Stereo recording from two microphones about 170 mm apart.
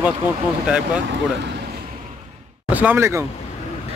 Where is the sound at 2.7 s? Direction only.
10° right (ahead or behind).